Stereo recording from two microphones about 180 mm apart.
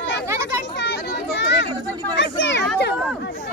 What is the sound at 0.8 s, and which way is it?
Children playing, 75° left (ahead or behind).